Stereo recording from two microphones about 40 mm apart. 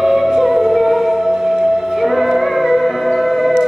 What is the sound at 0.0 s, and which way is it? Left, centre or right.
Music, centre.